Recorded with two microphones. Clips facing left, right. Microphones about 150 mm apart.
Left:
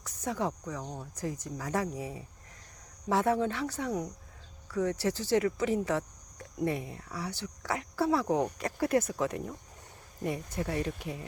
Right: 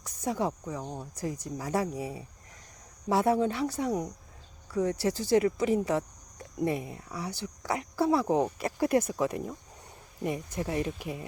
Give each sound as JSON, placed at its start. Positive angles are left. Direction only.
{"t": 0.0, "sound": "speech", "side_deg": -15}